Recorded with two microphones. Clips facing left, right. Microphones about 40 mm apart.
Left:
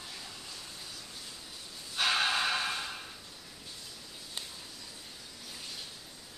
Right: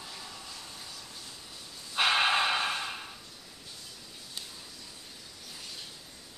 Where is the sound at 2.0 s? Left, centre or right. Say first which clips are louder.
Right 4 dB; right.